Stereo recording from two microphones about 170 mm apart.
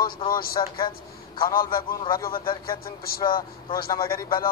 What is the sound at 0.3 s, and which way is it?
Speech, 60° left (ahead or behind).